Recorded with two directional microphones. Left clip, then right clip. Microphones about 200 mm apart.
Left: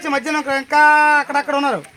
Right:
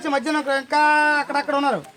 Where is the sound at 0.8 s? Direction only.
40° left (ahead or behind).